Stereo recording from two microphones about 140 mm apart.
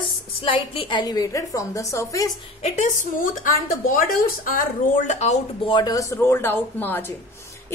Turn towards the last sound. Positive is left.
turn(degrees=15)  # may be behind; listen again after turning